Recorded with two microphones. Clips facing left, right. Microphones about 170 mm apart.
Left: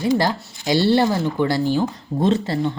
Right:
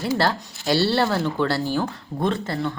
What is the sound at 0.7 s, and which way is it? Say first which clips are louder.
Speech: left 3 dB; 20° left (ahead or behind).